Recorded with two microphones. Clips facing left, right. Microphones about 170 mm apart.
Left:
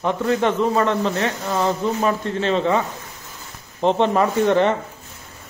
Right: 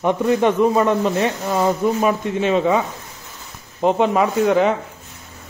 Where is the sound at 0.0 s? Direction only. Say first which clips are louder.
Right 3 dB; 15° right (ahead or behind).